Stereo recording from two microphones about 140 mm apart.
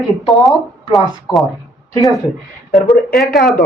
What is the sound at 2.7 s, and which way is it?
Speech, centre (ahead or behind).